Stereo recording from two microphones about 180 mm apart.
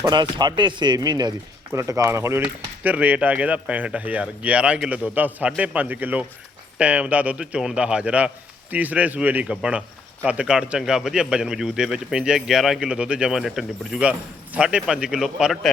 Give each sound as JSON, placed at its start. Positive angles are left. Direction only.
{"t": 0.0, "sound": "a man's voice", "side_deg": -25}